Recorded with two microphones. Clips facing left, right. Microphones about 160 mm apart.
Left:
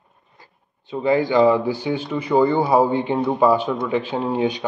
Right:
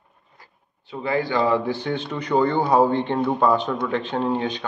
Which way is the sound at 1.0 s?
15° left (ahead or behind).